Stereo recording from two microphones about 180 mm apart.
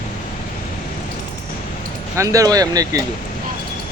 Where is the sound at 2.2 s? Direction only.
20° right (ahead or behind).